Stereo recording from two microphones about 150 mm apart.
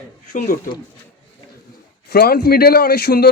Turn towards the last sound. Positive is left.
turn(degrees=90)